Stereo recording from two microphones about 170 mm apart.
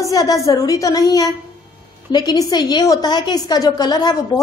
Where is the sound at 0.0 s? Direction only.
20° left (ahead or behind).